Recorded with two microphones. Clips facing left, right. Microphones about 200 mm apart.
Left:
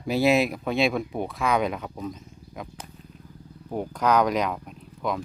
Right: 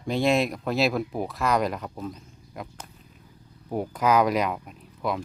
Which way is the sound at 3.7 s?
5° right (ahead or behind).